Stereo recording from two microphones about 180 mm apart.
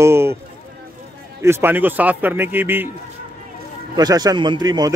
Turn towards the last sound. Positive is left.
turn(degrees=-20)  # may be behind; listen again after turning